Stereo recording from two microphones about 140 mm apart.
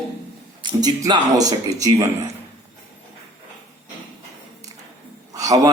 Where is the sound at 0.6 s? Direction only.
30° right (ahead or behind).